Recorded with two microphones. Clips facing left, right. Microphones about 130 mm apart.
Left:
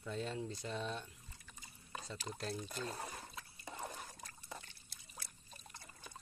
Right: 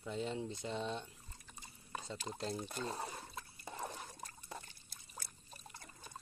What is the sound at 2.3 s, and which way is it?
Speech, 20° right (ahead or behind).